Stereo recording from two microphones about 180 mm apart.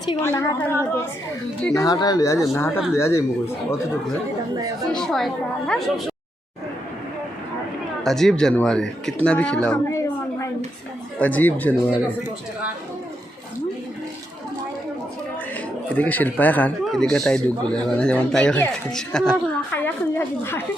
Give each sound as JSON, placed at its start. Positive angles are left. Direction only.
{"t": 0.2, "sound": "a woman's voice", "side_deg": 15}
{"t": 4.5, "sound": "speech", "side_deg": -20}
{"t": 4.9, "sound": "speech", "side_deg": 5}
{"t": 8.0, "sound": "a woman's voice", "side_deg": 0}
{"t": 16.0, "sound": "a woman's voice", "side_deg": 10}